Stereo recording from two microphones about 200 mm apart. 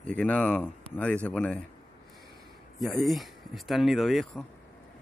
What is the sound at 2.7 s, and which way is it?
Speech, centre (ahead or behind).